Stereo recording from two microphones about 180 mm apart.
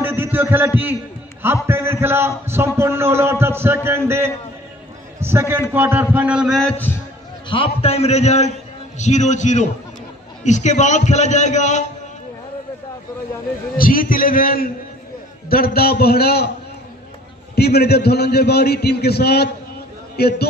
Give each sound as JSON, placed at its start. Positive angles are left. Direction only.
{"t": 0.0, "sound": "a man's voice", "side_deg": -10}
{"t": 7.4, "sound": "a man's voice", "side_deg": 30}
{"t": 13.7, "sound": "a man's voice", "side_deg": 50}
{"t": 17.6, "sound": "a man's voice", "side_deg": 65}